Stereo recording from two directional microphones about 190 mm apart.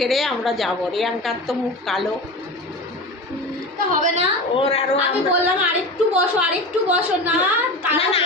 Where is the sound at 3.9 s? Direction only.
40° right (ahead or behind).